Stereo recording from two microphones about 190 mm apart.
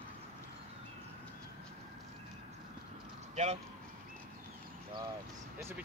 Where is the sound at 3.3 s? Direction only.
35° right (ahead or behind).